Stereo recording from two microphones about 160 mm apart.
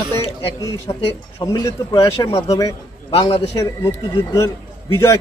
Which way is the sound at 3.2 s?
40° left (ahead or behind).